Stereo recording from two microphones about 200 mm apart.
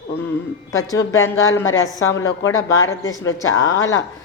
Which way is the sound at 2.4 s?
80° left.